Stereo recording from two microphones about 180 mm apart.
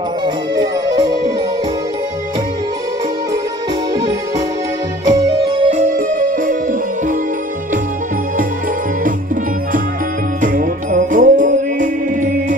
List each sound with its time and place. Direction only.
0.9 s music: 25° right (ahead or behind)
5.0 s music: 25° right (ahead or behind)
5.7 s music: 45° right (ahead or behind)
10.4 s music: 45° right (ahead or behind)